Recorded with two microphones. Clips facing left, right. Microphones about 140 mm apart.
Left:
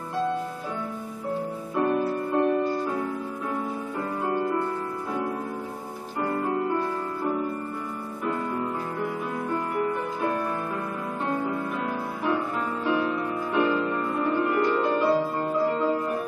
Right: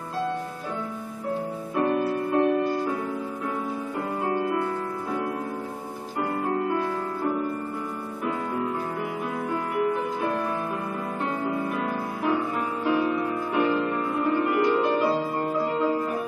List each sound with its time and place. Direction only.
1.8 s music: centre (ahead or behind)
4.3 s music: centre (ahead or behind)
6.4 s music: centre (ahead or behind)
11.4 s music: 5° right (ahead or behind)